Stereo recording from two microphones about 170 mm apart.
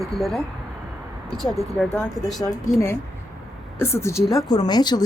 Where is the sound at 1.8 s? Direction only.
Centre (ahead or behind).